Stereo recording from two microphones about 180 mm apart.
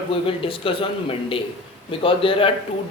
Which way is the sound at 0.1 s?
30° left (ahead or behind).